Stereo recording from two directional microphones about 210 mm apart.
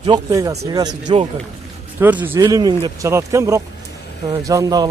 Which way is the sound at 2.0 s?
10° right (ahead or behind).